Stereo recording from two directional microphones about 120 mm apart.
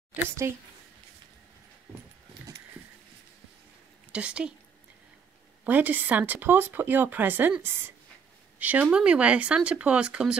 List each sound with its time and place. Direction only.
0.4 s speech: 20° right (ahead or behind)
4.1 s speech: 10° right (ahead or behind)
5.6 s speech: 15° right (ahead or behind)